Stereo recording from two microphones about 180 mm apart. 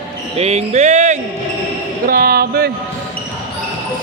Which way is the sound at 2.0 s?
55° right (ahead or behind).